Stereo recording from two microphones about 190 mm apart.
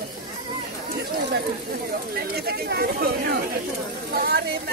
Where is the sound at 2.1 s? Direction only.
55° right (ahead or behind).